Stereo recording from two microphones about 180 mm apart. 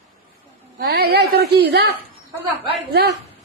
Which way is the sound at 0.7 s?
60° right (ahead or behind).